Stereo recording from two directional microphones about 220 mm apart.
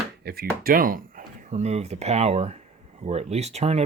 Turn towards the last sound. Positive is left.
turn(degrees=-30)  # may be behind; listen again after turning